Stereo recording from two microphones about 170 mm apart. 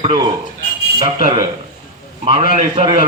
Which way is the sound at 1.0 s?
40° right (ahead or behind).